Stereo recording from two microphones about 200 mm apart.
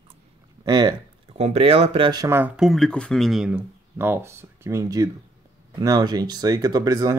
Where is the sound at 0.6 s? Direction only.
20° right (ahead or behind).